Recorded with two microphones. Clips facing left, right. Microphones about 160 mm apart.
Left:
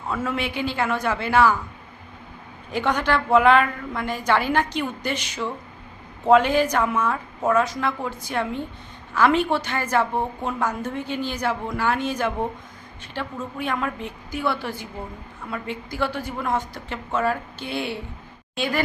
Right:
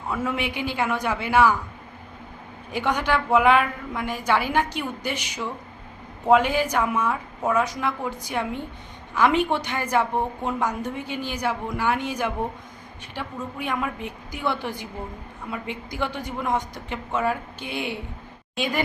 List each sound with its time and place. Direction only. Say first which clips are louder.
0.1 s a woman's voice: left 1 dB; 15° right (ahead or behind)
2.7 s a woman's voice: left 1 dB; 10° right (ahead or behind)